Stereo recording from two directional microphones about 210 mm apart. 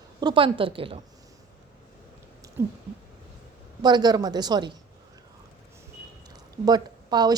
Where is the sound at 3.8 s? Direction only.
20° right (ahead or behind).